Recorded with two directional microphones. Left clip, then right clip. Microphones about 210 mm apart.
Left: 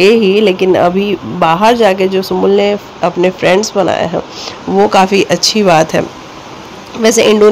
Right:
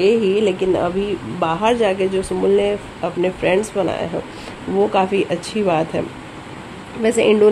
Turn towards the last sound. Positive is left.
turn(degrees=10)  # may be behind; listen again after turning